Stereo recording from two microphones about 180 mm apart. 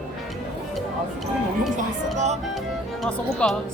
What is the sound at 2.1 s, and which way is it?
Music, 40° right (ahead or behind).